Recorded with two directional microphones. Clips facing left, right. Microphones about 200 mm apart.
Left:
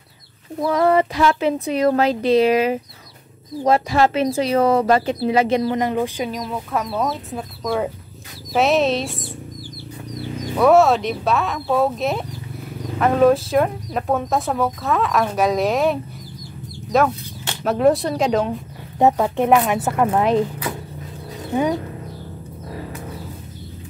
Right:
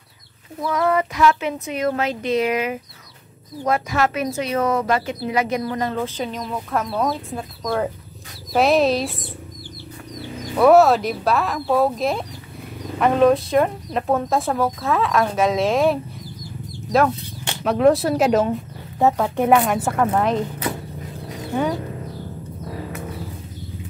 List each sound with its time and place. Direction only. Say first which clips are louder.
0.6 s speech: left 4 dB; 35° left (ahead or behind); by 9.1 s centre (ahead or behind)
10.6 s speech: right 1 dB; centre (ahead or behind)
17.6 s speech: right 1 dB; centre (ahead or behind)
18.9 s a woman's voice: left 2 dB; 15° left (ahead or behind)
19.3 s speech: even; centre (ahead or behind)